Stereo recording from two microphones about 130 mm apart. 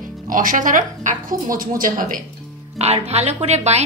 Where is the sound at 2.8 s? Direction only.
55° right (ahead or behind).